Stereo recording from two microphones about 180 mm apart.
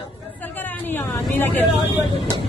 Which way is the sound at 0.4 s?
10° left (ahead or behind).